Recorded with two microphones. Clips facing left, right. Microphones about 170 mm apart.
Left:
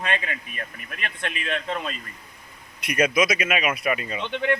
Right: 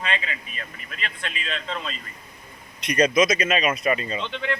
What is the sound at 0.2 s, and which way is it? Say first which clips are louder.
A man's voice: left 2 dB; 50° left (ahead or behind).